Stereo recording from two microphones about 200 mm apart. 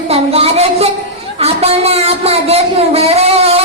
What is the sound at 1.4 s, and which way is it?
Speech, 30° right (ahead or behind).